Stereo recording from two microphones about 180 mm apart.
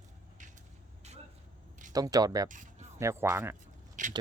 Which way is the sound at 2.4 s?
45° right (ahead or behind).